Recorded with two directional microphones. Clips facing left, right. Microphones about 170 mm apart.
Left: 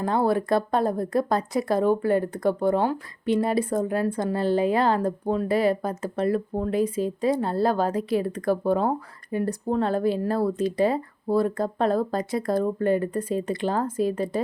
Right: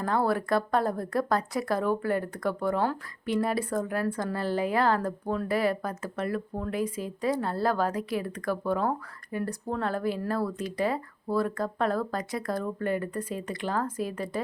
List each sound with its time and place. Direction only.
0.0 s speech: 20° left (ahead or behind)